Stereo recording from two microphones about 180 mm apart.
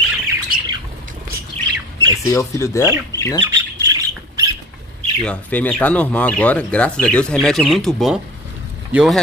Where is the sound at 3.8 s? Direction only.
20° right (ahead or behind).